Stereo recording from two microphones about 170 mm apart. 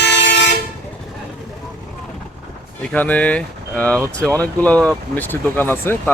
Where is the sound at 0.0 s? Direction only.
90° left.